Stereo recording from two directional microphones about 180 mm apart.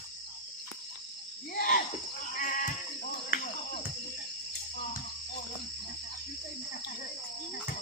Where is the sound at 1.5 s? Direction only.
50° left (ahead or behind).